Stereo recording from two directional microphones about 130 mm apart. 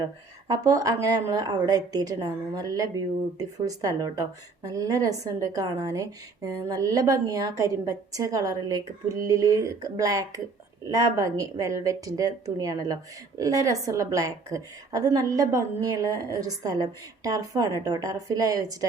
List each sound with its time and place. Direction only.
0.0 s a woman's voice: 30° right (ahead or behind)